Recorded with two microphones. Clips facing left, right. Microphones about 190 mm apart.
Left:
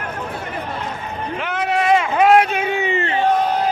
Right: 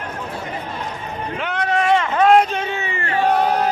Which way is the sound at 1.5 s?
5° left (ahead or behind).